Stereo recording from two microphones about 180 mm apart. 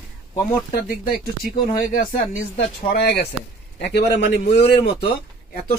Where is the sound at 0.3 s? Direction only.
30° left (ahead or behind).